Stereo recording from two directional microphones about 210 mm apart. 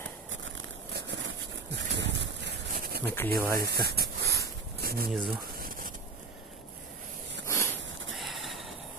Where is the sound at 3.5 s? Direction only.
50° right (ahead or behind).